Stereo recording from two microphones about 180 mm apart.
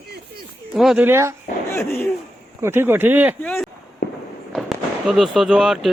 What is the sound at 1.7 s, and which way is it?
Hoot, 15° left (ahead or behind).